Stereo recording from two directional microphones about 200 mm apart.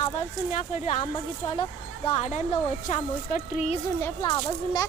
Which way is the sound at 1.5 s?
25° left (ahead or behind).